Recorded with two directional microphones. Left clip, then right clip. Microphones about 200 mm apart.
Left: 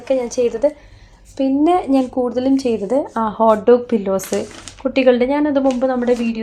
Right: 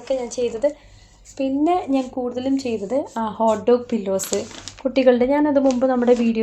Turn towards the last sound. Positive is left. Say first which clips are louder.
# even
turn(degrees=-15)  # may be behind; listen again after turning